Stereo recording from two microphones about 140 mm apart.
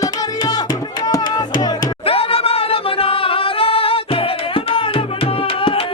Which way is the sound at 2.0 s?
40° left (ahead or behind).